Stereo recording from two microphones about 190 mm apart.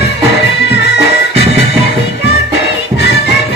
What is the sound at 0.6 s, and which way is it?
Music, 60° left (ahead or behind).